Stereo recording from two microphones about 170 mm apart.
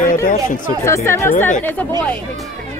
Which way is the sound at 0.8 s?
15° left (ahead or behind).